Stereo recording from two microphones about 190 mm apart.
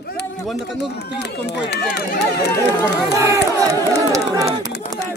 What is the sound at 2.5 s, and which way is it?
Speech, 15° left (ahead or behind).